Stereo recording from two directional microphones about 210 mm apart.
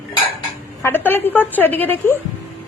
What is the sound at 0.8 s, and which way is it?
A woman's voice, 10° left (ahead or behind).